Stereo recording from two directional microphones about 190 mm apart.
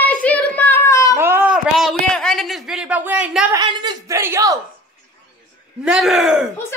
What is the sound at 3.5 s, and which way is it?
Speech, 25° right (ahead or behind).